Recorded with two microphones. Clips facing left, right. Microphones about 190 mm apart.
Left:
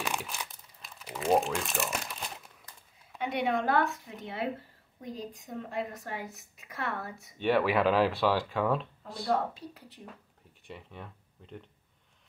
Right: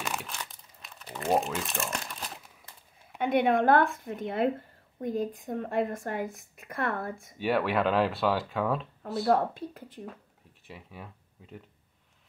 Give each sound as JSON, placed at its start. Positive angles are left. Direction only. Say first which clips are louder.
{"t": 0.0, "sound": "crumpling", "louder": "left 1 dB", "side_deg": 5}
{"t": 3.2, "sound": "a woman's voice", "louder": "right 6 dB", "side_deg": -55}
{"t": 7.3, "sound": "speech", "louder": "left 1 dB", "side_deg": 0}
{"t": 9.3, "sound": "speech", "louder": "right 4 dB", "side_deg": -55}
{"t": 10.7, "sound": "speech", "louder": "even", "side_deg": -5}